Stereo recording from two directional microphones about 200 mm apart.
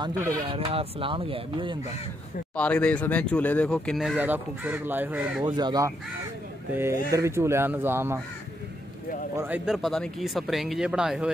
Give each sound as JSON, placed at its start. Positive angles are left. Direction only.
{"t": 0.5, "sound": "speech", "side_deg": -30}
{"t": 2.5, "sound": "speech", "side_deg": 5}
{"t": 5.4, "sound": "speech", "side_deg": -20}
{"t": 9.4, "sound": "speech", "side_deg": -5}